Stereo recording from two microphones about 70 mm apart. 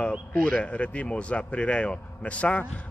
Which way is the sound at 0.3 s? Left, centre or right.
Centre.